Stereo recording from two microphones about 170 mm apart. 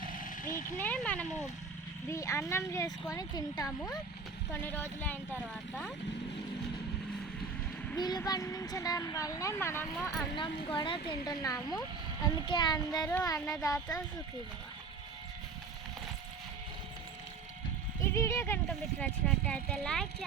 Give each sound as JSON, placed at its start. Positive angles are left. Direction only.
{"t": 0.1, "sound": "vehicle", "side_deg": 55}
{"t": 0.8, "sound": "speech", "side_deg": 10}
{"t": 7.9, "sound": "speech", "side_deg": 25}
{"t": 10.3, "sound": "speech", "side_deg": 25}
{"t": 18.0, "sound": "speech", "side_deg": 15}